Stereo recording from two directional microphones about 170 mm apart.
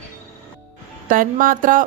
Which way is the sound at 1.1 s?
55° right (ahead or behind).